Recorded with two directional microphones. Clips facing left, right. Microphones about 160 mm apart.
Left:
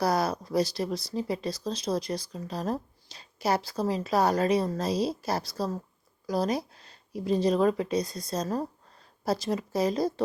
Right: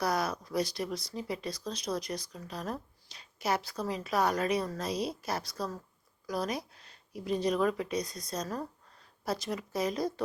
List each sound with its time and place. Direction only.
0.0 s speech: 35° left (ahead or behind)